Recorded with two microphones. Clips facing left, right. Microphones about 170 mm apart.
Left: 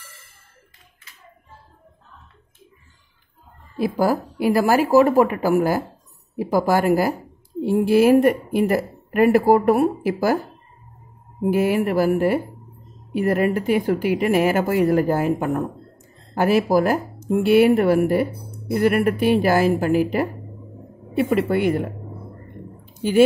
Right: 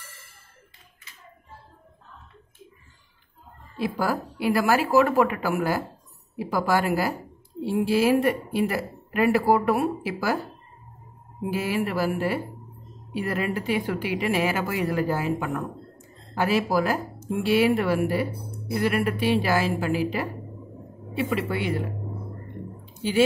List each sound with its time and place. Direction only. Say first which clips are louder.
3.7 s a woman's voice: left 6 dB; 45° left (ahead or behind)
11.4 s a woman's voice: left 7 dB; 50° left (ahead or behind)